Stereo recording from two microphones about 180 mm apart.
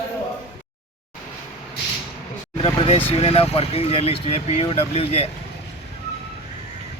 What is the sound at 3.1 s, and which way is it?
Speech, 35° left (ahead or behind).